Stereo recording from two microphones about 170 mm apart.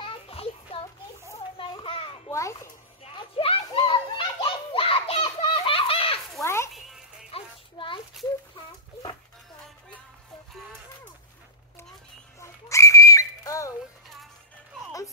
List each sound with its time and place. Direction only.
0.0 s children playing: 35° left (ahead or behind)
2.2 s children playing: 20° left (ahead or behind)
3.0 s children playing: 30° left (ahead or behind)
6.4 s a sound: 15° left (ahead or behind)
7.2 s music: 30° left (ahead or behind)
12.4 s whistle: 20° left (ahead or behind)